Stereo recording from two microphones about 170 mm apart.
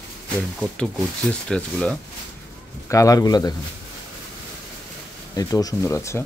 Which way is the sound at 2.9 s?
20° left (ahead or behind).